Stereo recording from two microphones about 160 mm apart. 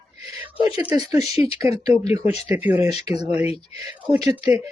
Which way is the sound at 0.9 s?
25° right (ahead or behind).